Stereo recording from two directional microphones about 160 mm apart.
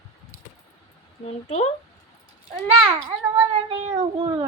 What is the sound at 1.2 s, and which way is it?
Speech, 40° left (ahead or behind).